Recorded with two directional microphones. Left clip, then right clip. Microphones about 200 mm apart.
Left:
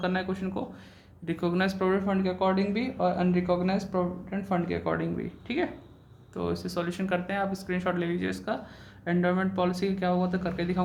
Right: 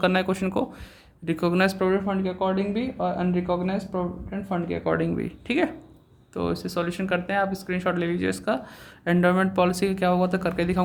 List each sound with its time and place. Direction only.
0.0 s speech: 40° right (ahead or behind)
1.2 s speech: 30° right (ahead or behind)
1.9 s speech: 10° right (ahead or behind)
4.9 s speech: 30° right (ahead or behind)